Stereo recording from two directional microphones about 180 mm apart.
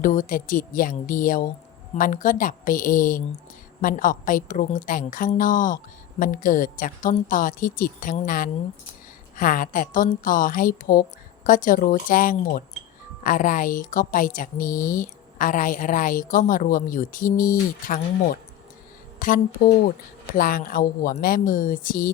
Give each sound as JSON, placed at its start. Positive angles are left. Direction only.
{"t": 0.0, "sound": "speech", "side_deg": 50}